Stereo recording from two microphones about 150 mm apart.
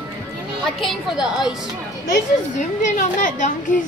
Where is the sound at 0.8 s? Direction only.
Centre (ahead or behind).